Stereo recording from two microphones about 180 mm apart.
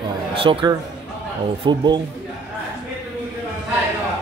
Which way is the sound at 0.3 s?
30° right (ahead or behind).